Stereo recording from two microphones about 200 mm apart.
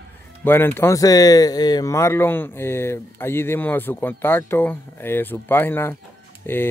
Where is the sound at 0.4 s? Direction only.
10° left (ahead or behind).